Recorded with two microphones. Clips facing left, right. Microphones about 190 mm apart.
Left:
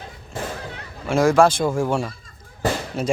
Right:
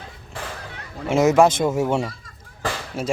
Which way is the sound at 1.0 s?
20° right (ahead or behind).